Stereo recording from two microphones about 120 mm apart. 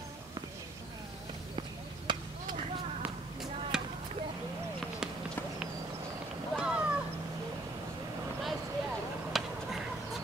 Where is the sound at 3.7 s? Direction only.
5° right (ahead or behind).